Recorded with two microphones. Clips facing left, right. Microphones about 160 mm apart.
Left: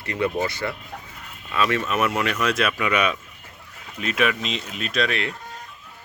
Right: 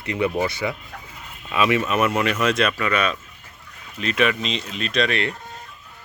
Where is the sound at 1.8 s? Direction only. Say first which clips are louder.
Right 2 dB; centre (ahead or behind).